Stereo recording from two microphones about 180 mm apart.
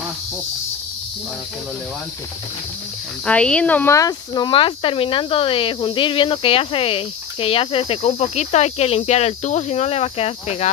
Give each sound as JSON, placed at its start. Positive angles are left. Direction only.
{"t": 3.3, "sound": "speech", "side_deg": 5}